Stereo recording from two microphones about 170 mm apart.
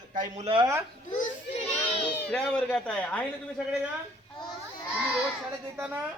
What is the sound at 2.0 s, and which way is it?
Speech, 5° left (ahead or behind).